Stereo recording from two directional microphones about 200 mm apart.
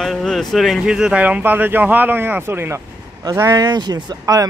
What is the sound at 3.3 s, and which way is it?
Speech, 15° right (ahead or behind).